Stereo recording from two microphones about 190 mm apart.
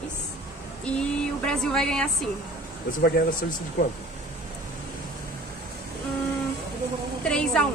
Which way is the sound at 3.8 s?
45° left (ahead or behind).